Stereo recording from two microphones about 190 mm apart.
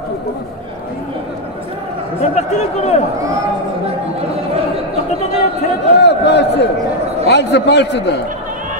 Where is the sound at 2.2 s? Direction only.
35° left (ahead or behind).